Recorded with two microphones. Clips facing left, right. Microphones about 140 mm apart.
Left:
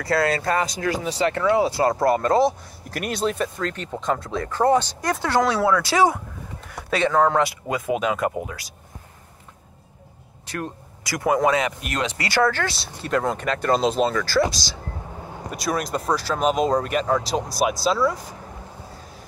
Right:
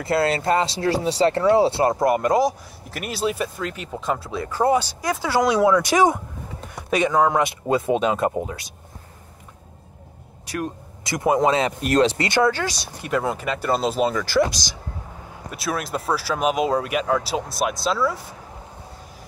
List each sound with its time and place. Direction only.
0.0 s speech: 25° right (ahead or behind)
2.9 s speech: 5° right (ahead or behind)
5.4 s speech: 15° right (ahead or behind)
7.6 s speech: 30° right (ahead or behind)
10.5 s speech: 20° right (ahead or behind)
14.1 s speech: 20° right (ahead or behind)
15.5 s speech: centre (ahead or behind)